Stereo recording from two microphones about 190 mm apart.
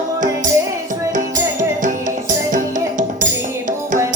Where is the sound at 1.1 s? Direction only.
40° right (ahead or behind).